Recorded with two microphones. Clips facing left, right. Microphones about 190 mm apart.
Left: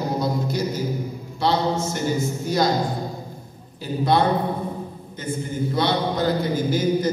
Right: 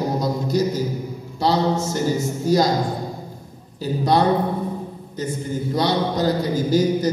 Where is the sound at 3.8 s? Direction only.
40° right (ahead or behind).